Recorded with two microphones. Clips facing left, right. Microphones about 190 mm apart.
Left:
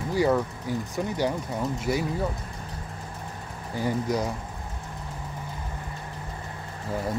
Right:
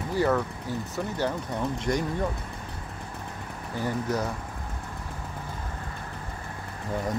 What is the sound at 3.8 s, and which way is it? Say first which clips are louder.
Speech: left 2 dB; 10° left (ahead or behind).